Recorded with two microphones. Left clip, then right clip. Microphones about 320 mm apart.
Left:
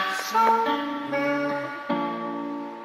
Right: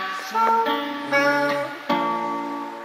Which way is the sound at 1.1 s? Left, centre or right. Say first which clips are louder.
Right 7 dB; right.